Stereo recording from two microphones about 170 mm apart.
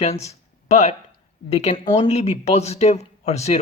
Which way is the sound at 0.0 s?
40° left (ahead or behind).